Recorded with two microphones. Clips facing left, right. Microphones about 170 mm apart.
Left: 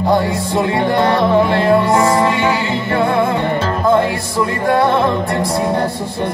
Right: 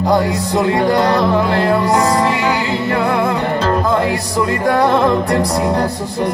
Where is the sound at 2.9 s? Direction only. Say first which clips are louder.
Left 2 dB; 40° right (ahead or behind).